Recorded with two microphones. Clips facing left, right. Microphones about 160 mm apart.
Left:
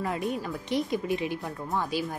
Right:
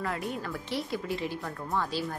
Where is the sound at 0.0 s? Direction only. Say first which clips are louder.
Left 3 dB; 20° left (ahead or behind).